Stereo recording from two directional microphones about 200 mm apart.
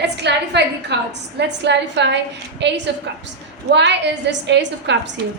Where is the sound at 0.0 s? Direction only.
60° right (ahead or behind).